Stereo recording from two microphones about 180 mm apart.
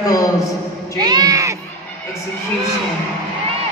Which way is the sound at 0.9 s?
20° right (ahead or behind).